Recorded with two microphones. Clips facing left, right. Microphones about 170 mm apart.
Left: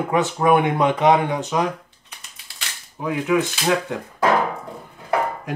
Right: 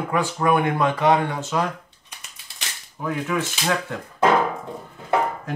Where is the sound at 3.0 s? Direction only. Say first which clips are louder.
Left 5 dB; 15° left (ahead or behind).